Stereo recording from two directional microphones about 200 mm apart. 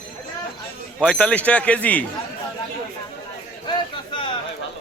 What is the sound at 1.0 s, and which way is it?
Speech, 5° left (ahead or behind).